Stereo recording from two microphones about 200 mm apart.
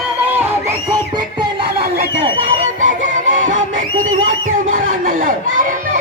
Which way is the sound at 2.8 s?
40° right (ahead or behind).